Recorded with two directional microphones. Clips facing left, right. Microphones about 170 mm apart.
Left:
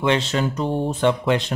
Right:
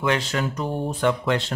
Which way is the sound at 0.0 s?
25° left (ahead or behind).